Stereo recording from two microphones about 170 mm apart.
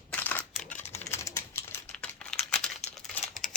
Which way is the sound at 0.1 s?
10° left (ahead or behind).